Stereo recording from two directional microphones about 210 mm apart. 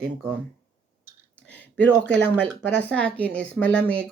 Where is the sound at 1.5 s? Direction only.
5° left (ahead or behind).